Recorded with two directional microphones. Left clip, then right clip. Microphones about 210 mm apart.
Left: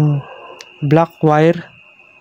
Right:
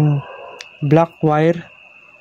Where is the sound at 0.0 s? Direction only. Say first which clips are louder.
Left 1 dB; 5° left (ahead or behind).